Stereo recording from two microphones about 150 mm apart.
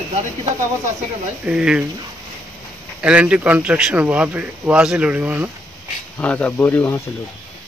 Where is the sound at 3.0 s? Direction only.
10° right (ahead or behind).